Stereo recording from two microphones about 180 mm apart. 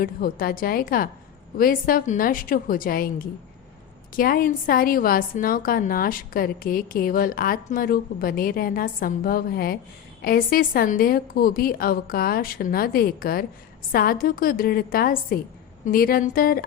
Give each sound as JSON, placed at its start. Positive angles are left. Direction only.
{"t": 0.0, "sound": "a woman's voice", "side_deg": 55}